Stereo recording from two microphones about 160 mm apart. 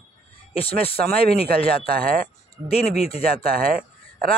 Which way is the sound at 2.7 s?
40° left (ahead or behind).